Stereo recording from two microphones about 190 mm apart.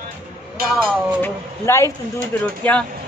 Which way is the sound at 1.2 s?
15° left (ahead or behind).